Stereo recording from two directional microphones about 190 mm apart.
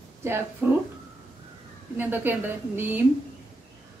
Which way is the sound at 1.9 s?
10° right (ahead or behind).